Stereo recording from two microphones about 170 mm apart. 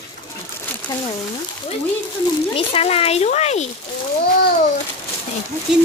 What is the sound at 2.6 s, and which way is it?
A woman's voice, 35° left (ahead or behind).